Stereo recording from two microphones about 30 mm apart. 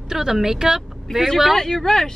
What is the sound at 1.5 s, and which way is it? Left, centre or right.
Speech, centre.